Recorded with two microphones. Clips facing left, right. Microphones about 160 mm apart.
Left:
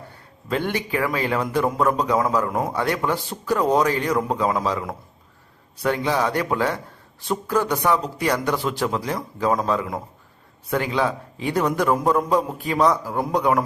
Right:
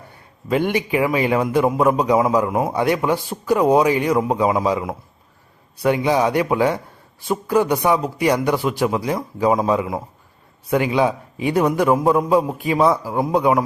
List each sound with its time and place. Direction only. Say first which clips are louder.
0.1 s a man's voice: right 5 dB; 15° right (ahead or behind)